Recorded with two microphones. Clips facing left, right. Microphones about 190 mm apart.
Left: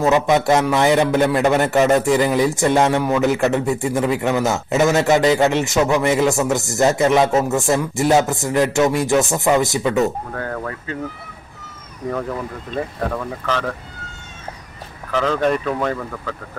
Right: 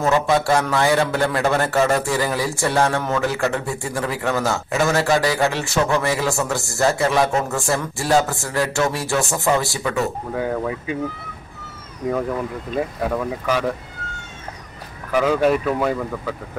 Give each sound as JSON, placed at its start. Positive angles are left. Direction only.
{"t": 0.0, "sound": "a man's voice", "side_deg": 20}
{"t": 10.3, "sound": "speech", "side_deg": -10}
{"t": 12.7, "sound": "speech", "side_deg": -10}
{"t": 15.0, "sound": "speech", "side_deg": -10}